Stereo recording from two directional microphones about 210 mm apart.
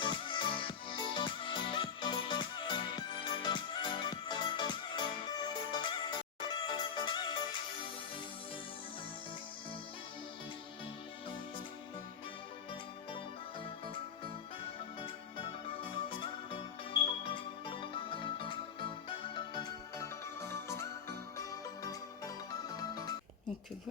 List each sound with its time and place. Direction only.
0.0 s music: 25° left (ahead or behind)
15.0 s music: 25° left (ahead or behind)